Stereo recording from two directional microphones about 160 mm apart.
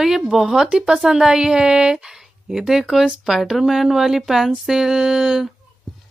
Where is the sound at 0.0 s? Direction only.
Centre (ahead or behind).